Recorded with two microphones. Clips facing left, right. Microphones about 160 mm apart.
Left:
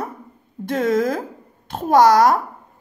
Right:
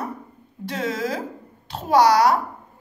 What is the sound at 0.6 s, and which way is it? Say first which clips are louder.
A woman's voice: left 7 dB; 50° left (ahead or behind).